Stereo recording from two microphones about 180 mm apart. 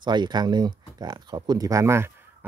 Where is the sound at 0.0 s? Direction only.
25° right (ahead or behind).